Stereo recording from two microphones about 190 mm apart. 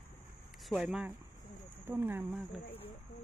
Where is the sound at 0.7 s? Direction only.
5° right (ahead or behind).